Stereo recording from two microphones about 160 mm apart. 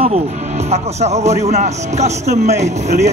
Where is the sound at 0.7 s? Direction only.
45° right (ahead or behind).